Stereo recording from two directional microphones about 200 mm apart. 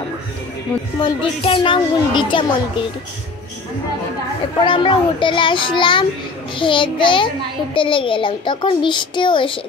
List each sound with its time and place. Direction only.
0.9 s a child's voice: 25° left (ahead or behind)
4.6 s a child's voice: 25° left (ahead or behind)